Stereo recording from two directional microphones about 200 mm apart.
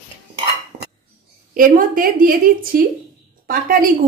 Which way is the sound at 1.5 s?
45° right (ahead or behind).